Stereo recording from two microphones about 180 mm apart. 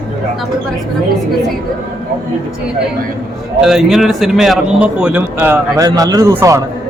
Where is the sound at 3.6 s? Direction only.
Centre (ahead or behind).